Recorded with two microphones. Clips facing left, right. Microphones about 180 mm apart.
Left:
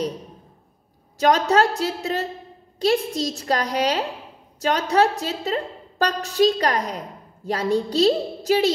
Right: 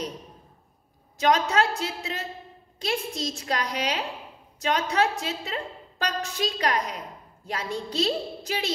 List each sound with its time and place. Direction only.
1.2 s a woman's voice: 35° left (ahead or behind)